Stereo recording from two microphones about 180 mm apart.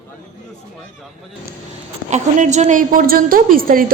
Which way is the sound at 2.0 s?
40° right (ahead or behind).